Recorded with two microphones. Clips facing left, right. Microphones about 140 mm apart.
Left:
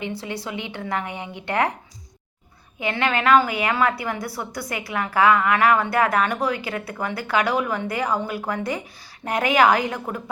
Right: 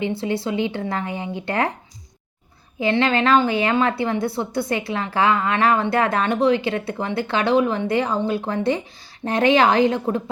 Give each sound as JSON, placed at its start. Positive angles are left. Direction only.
{"t": 0.0, "sound": "speech", "side_deg": -30}
{"t": 2.8, "sound": "a woman's voice", "side_deg": -30}